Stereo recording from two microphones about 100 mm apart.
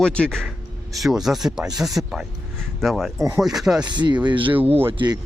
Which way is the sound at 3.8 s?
50° right (ahead or behind).